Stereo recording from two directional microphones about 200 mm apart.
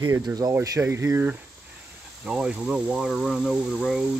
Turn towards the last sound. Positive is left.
turn(degrees=-5)  # may be behind; listen again after turning